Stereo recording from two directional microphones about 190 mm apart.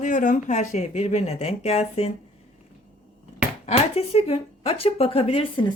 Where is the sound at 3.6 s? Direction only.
30° left (ahead or behind).